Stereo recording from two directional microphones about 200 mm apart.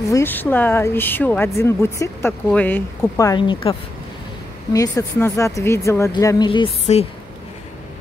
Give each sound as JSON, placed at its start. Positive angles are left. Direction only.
{"t": 0.1, "sound": "speech", "side_deg": 10}
{"t": 4.7, "sound": "speech", "side_deg": 15}